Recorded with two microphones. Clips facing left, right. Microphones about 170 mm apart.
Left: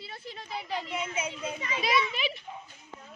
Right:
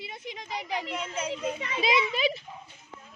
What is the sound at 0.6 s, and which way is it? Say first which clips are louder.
Speech: right 1 dB; 15° right (ahead or behind).